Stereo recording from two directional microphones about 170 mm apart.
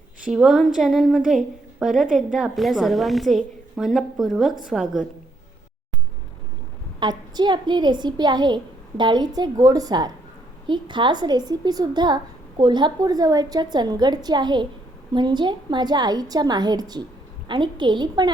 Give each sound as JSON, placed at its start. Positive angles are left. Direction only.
{"t": 0.3, "sound": "a woman's voice", "side_deg": 0}
{"t": 7.0, "sound": "a woman's voice", "side_deg": -25}